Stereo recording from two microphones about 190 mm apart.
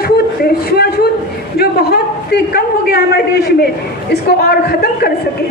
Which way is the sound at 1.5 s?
55° left (ahead or behind).